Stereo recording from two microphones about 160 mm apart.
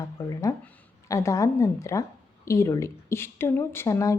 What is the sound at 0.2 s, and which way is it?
A woman's voice, 20° left (ahead or behind).